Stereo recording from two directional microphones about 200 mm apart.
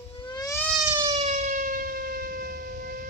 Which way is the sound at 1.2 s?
35° right (ahead or behind).